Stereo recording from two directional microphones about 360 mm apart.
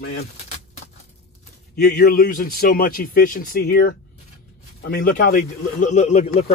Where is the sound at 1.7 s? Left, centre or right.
Left.